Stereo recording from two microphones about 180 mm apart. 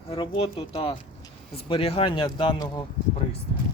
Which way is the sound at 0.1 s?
30° left (ahead or behind).